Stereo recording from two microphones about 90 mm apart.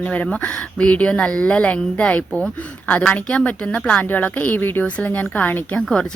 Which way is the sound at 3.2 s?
15° left (ahead or behind).